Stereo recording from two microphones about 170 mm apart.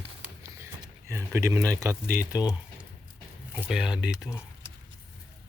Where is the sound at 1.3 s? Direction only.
20° right (ahead or behind).